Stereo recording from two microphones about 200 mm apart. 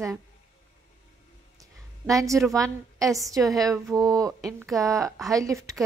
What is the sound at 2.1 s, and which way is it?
Speech, 15° right (ahead or behind).